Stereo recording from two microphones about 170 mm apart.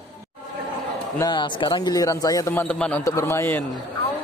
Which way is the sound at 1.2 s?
25° left (ahead or behind).